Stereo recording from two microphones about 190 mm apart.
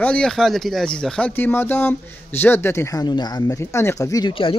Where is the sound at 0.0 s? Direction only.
5° left (ahead or behind).